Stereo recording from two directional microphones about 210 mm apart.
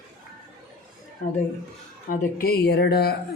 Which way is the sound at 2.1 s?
45° left (ahead or behind).